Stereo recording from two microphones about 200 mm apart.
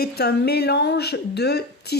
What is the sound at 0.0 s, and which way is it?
Speech, 55° left (ahead or behind).